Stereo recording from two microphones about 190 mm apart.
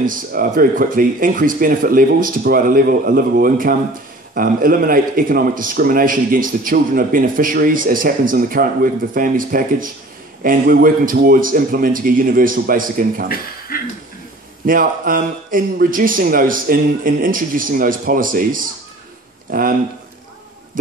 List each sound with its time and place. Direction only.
0.0 s a man's voice: 45° right (ahead or behind)
13.3 s speech: 50° left (ahead or behind)
14.7 s a man's voice: 45° right (ahead or behind)